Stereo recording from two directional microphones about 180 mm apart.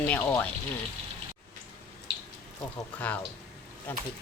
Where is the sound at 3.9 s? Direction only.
10° left (ahead or behind).